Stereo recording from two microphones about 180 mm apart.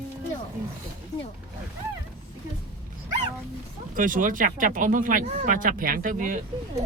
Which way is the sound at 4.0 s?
50° right (ahead or behind).